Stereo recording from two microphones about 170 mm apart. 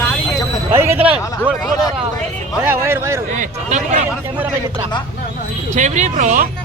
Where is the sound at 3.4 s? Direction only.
45° right (ahead or behind).